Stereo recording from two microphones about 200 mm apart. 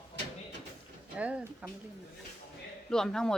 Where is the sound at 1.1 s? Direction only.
5° right (ahead or behind).